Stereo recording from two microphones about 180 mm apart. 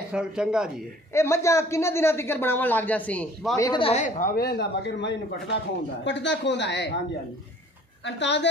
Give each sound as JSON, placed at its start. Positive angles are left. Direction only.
{"t": 0.1, "sound": "speech", "side_deg": -5}
{"t": 1.1, "sound": "a man's voice", "side_deg": 15}
{"t": 3.6, "sound": "a woman's voice", "side_deg": 25}
{"t": 3.9, "sound": "a woman's voice", "side_deg": 45}
{"t": 8.0, "sound": "a woman's voice", "side_deg": 80}